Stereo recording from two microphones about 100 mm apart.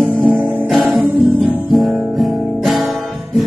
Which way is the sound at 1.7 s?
Centre (ahead or behind).